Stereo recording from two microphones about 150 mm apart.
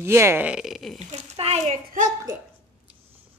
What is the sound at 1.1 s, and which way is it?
A child's voice, 50° right (ahead or behind).